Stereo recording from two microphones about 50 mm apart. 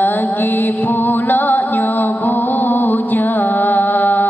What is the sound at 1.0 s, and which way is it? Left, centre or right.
Music, left.